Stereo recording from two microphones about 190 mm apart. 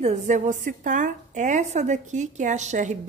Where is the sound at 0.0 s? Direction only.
40° right (ahead or behind).